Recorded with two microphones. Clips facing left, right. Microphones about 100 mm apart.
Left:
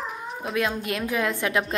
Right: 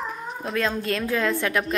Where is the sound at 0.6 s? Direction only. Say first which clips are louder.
Right 1 dB; 15° left (ahead or behind).